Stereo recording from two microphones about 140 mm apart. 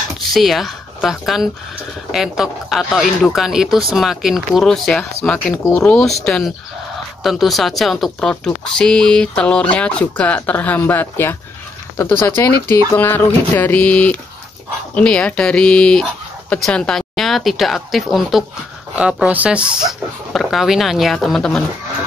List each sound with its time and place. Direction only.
0.3 s speech: centre (ahead or behind)